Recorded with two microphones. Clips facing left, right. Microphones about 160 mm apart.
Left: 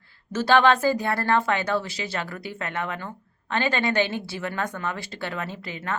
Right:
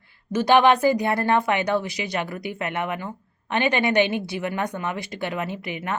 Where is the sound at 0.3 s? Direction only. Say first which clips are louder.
Right 2 dB; 15° right (ahead or behind).